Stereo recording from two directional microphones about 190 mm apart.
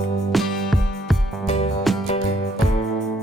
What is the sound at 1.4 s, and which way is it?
Music, 35° left (ahead or behind).